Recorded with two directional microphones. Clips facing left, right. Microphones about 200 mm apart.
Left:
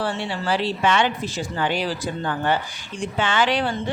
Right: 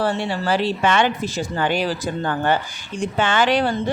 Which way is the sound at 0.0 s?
40° right (ahead or behind).